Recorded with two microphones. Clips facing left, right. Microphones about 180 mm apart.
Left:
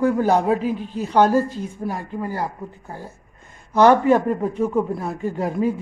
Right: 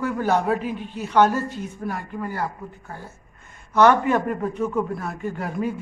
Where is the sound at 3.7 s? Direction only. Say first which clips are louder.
Left 3 dB; 35° left (ahead or behind).